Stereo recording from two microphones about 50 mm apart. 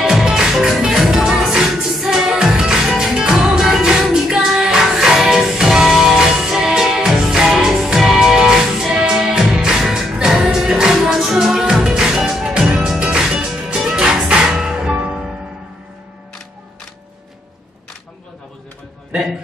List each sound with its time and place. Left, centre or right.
0.0 s music: centre